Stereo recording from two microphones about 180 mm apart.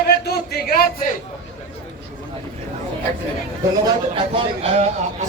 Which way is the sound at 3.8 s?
25° right (ahead or behind).